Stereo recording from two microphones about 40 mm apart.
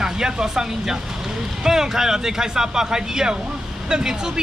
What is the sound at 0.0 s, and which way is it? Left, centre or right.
Speech, centre.